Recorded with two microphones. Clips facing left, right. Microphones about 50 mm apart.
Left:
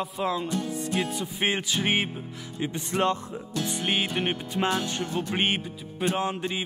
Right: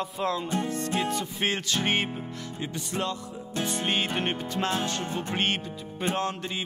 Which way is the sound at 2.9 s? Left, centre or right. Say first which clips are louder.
Left 6 dB; left.